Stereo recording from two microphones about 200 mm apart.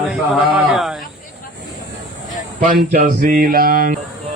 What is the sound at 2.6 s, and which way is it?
Speech, 45° right (ahead or behind).